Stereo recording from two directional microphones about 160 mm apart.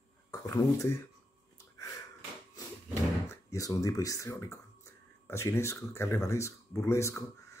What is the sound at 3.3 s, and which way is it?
Speech, 20° left (ahead or behind).